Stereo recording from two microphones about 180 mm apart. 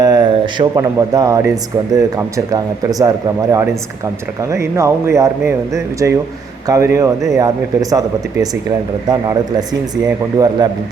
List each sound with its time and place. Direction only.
0.0 s speech: 20° right (ahead or behind)